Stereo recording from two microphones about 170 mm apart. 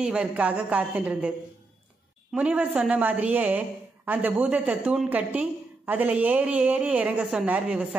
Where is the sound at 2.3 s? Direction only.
5° right (ahead or behind).